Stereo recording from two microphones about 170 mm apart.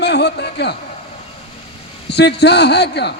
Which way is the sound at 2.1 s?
80° left.